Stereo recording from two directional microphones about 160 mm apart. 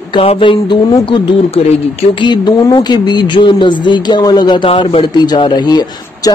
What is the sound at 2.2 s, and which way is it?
Speech, 30° left (ahead or behind).